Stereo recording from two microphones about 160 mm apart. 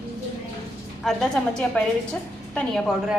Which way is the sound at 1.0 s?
5° left (ahead or behind).